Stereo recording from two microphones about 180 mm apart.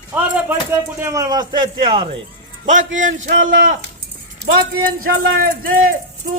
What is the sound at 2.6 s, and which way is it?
Speech, 45° right (ahead or behind).